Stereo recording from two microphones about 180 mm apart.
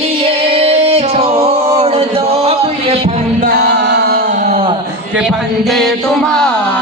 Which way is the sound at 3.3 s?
55° right (ahead or behind).